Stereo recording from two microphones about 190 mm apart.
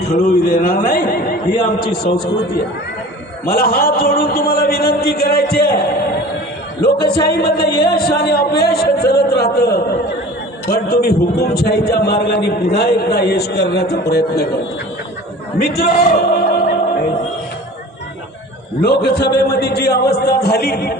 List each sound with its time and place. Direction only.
0.1 s a man's voice: 50° left (ahead or behind)
3.4 s a man's voice: 50° left (ahead or behind)
7.3 s a man's voice: 55° left (ahead or behind)
15.6 s a sound: 55° left (ahead or behind)
18.8 s a man's voice: 55° left (ahead or behind)